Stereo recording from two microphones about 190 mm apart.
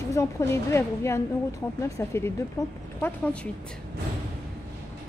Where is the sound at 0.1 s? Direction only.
15° left (ahead or behind).